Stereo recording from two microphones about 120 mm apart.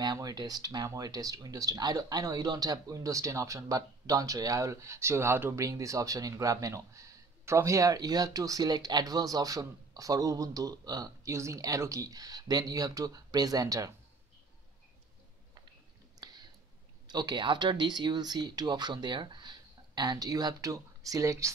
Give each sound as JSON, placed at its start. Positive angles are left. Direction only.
{"t": 0.0, "sound": "speech", "side_deg": -30}
{"t": 16.2, "sound": "a sound", "side_deg": -30}
{"t": 17.1, "sound": "speech", "side_deg": -35}